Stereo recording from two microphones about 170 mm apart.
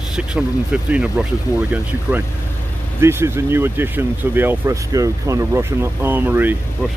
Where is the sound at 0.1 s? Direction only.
5° right (ahead or behind).